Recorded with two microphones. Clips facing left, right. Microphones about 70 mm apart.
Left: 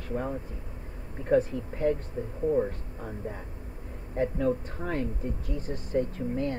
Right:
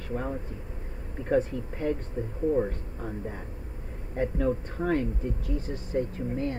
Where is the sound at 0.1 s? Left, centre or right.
Centre.